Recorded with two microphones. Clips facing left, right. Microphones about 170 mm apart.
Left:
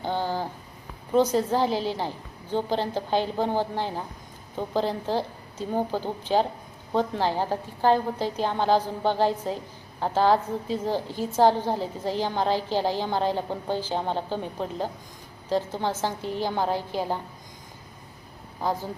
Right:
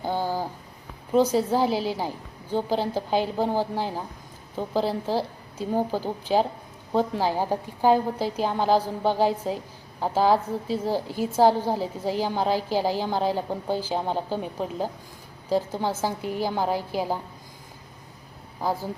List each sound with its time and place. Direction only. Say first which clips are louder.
0.0 s a sound: right 1 dB; 10° right (ahead or behind)
1.1 s a woman's voice: right 1 dB; 10° right (ahead or behind)
18.6 s a woman's voice: right 1 dB; 10° right (ahead or behind)